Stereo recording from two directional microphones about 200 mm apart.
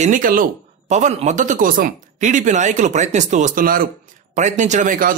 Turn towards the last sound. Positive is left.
turn(degrees=-40)  # may be behind; listen again after turning